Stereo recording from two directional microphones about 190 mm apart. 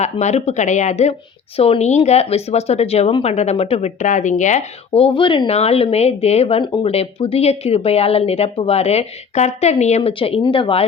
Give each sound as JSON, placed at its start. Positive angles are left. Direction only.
{"t": 0.0, "sound": "speech", "side_deg": 35}